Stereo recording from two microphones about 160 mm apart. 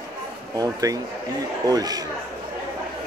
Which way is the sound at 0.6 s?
20° right (ahead or behind).